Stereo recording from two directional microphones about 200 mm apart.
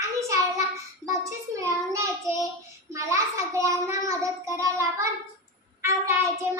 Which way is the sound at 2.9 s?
15° right (ahead or behind).